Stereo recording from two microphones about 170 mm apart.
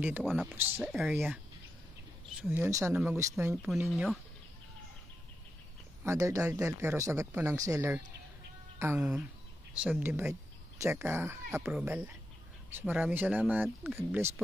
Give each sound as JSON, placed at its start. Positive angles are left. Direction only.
{"t": 0.2, "sound": "speech", "side_deg": 0}
{"t": 0.5, "sound": "speech", "side_deg": -10}
{"t": 3.9, "sound": "speech", "side_deg": 0}
{"t": 6.0, "sound": "speech", "side_deg": -15}